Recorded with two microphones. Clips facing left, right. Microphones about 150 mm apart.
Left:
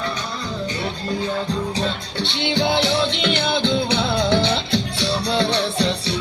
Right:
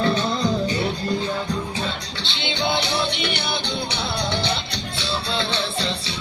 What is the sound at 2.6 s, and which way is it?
Music, 90° left.